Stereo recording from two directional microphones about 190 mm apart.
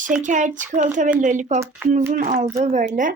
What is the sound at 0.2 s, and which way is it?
Speech, 40° right (ahead or behind).